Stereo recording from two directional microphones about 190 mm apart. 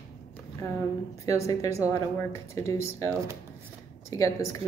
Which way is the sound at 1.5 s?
15° left (ahead or behind).